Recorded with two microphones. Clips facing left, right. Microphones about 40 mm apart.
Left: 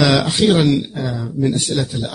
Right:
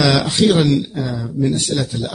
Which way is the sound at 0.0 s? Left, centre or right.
Centre.